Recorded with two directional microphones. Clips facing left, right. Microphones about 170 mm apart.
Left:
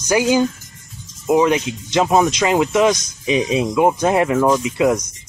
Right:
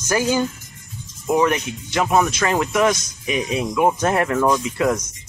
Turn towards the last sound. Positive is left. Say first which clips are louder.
# left 4 dB
turn(degrees=15)  # may be behind; listen again after turning